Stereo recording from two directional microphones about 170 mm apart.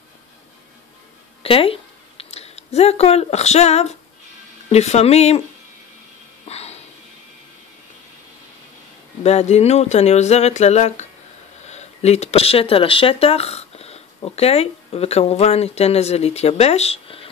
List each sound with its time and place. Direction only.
1.4 s speech: 35° left (ahead or behind)
6.4 s music: 40° left (ahead or behind)
9.2 s speech: 40° left (ahead or behind)